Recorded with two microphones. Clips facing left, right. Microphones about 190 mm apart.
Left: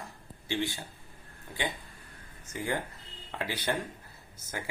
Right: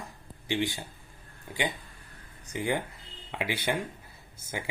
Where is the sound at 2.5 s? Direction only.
15° right (ahead or behind).